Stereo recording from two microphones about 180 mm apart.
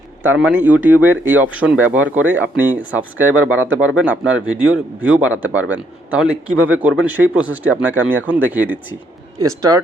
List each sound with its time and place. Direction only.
0.2 s a man's voice: 10° right (ahead or behind)